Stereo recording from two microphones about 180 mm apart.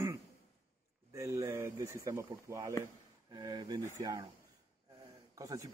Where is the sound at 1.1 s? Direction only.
15° right (ahead or behind).